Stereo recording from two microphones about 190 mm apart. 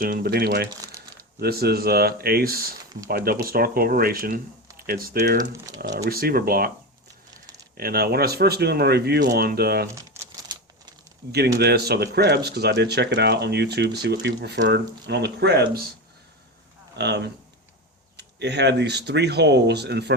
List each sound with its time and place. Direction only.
0.0 s speech: 50° right (ahead or behind)
0.7 s crumpling: 20° right (ahead or behind)
1.4 s speech: 55° right (ahead or behind)
5.7 s speech: 20° right (ahead or behind)
6.1 s speech: 50° right (ahead or behind)
7.8 s speech: 55° right (ahead or behind)
9.9 s crumpling: 20° right (ahead or behind)
11.3 s speech: 60° right (ahead or behind)
17.0 s speech: 60° right (ahead or behind)